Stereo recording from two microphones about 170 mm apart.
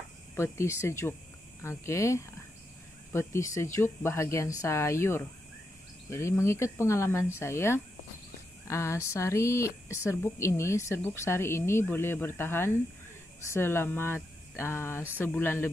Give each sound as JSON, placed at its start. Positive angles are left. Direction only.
{"t": 0.4, "sound": "speech", "side_deg": 15}